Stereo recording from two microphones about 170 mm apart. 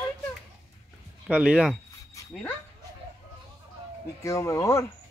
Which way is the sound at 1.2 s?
5° right (ahead or behind).